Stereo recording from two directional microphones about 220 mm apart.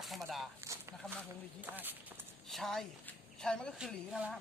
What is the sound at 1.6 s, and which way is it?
A woman's voice, 10° right (ahead or behind).